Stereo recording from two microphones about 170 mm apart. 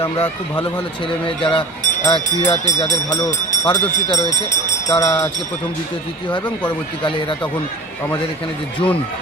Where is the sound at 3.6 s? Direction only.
20° left (ahead or behind).